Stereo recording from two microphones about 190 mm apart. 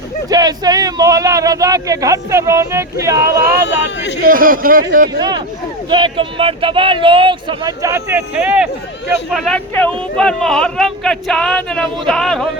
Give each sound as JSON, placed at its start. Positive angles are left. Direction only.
{"t": 0.3, "sound": "speech", "side_deg": -20}
{"t": 4.2, "sound": "a man's voice", "side_deg": -45}
{"t": 5.9, "sound": "speech", "side_deg": -25}